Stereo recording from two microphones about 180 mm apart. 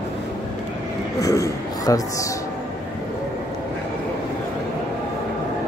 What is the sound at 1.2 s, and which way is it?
A man's voice, 20° left (ahead or behind).